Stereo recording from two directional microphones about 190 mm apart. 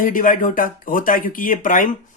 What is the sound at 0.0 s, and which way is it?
Speech, 45° left (ahead or behind).